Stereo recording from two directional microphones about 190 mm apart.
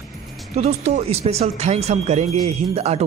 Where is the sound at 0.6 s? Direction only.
35° right (ahead or behind).